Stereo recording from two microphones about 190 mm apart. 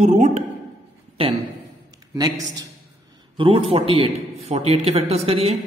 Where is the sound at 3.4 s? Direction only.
30° right (ahead or behind).